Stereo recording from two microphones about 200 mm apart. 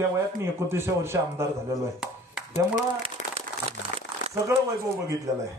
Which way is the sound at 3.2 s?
35° left (ahead or behind).